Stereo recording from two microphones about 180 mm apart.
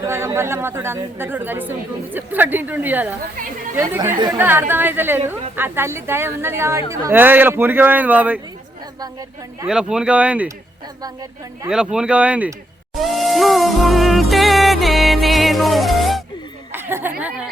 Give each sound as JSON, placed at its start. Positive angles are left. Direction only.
{"t": 0.0, "sound": "a woman's voice", "side_deg": -15}
{"t": 9.6, "sound": "a woman's voice", "side_deg": -5}
{"t": 11.0, "sound": "speech", "side_deg": -20}
{"t": 11.7, "sound": "speech", "side_deg": -5}
{"t": 16.7, "sound": "speech", "side_deg": -10}